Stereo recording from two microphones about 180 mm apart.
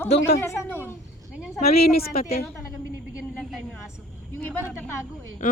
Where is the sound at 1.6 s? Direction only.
60° left (ahead or behind).